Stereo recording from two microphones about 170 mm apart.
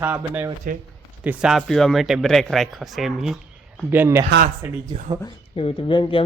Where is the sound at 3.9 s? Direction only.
15° right (ahead or behind).